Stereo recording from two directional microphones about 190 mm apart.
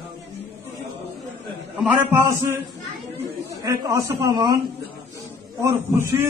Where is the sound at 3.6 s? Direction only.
15° right (ahead or behind).